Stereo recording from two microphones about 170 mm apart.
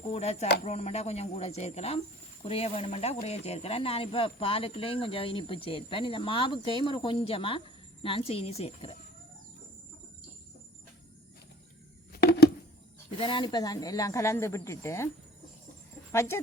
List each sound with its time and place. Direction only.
0.0 s speech: 40° left (ahead or behind)
12.1 s a sound: 70° left (ahead or behind)
13.1 s speech: 30° left (ahead or behind); by 15.1 s 15° left (ahead or behind)